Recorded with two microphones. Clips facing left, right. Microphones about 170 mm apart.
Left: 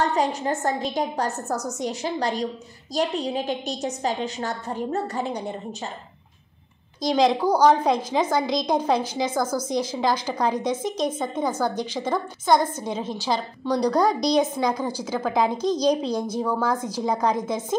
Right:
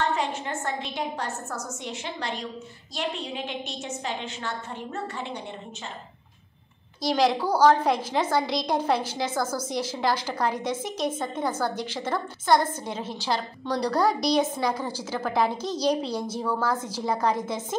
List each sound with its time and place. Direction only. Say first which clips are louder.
0.0 s a woman's voice: left 4 dB; 40° left (ahead or behind)
7.0 s a woman's voice: left 3 dB; 20° left (ahead or behind)